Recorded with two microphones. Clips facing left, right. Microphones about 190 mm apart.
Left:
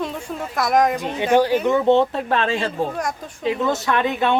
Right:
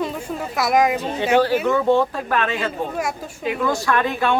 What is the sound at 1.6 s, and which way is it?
Speech, 20° left (ahead or behind).